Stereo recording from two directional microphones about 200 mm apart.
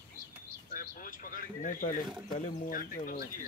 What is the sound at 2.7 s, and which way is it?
Speech, 45° left (ahead or behind).